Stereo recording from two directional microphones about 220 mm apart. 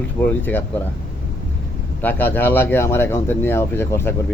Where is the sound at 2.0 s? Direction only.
10° left (ahead or behind).